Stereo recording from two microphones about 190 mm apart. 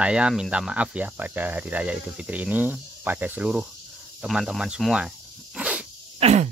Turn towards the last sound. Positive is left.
turn(degrees=-35)  # may be behind; listen again after turning